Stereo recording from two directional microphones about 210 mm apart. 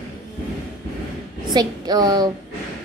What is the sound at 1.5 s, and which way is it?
Speech, 20° right (ahead or behind).